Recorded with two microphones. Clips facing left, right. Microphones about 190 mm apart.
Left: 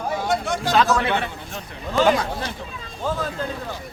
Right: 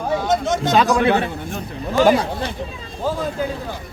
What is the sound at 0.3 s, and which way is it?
A man's voice, 20° right (ahead or behind).